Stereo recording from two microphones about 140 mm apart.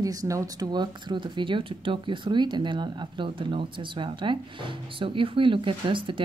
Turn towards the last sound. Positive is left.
turn(degrees=-35)  # may be behind; listen again after turning